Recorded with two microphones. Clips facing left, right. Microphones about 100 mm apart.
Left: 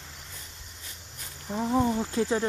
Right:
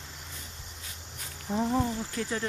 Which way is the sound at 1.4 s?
5° left (ahead or behind).